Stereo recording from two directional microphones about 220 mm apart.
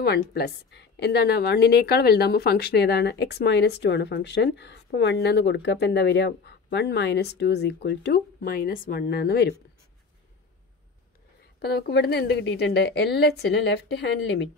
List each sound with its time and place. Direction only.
0.0 s a woman's voice: 45° left (ahead or behind)
11.6 s a woman's voice: 50° left (ahead or behind)